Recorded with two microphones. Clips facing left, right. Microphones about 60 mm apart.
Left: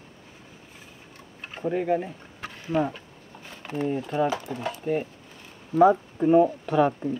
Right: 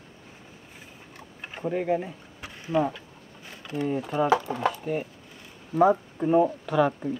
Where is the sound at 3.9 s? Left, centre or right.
Right.